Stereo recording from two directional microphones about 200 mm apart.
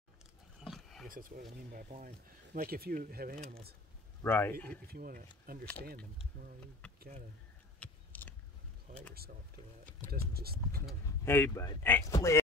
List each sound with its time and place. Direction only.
0.6 s roaring cats: centre (ahead or behind)
1.0 s speech: 45° right (ahead or behind)
4.2 s speech: 10° left (ahead or behind)
4.8 s speech: 50° right (ahead or behind)
7.0 s speech: 35° right (ahead or behind)
7.8 s a sound: 10° left (ahead or behind)
10.1 s speech: 50° right (ahead or behind)
11.1 s speech: 10° left (ahead or behind)